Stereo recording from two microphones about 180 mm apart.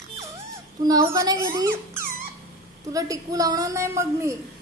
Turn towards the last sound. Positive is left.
turn(degrees=-15)  # may be behind; listen again after turning